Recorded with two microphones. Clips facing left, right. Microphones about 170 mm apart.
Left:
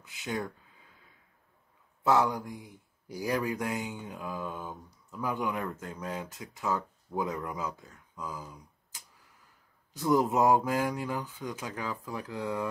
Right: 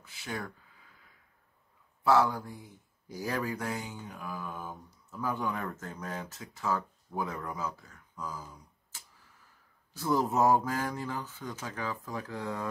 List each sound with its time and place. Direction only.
0.0 s speech: 20° left (ahead or behind)
2.0 s speech: 20° left (ahead or behind)